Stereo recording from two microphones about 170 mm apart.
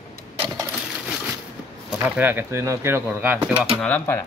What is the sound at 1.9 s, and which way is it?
Speech, 10° right (ahead or behind).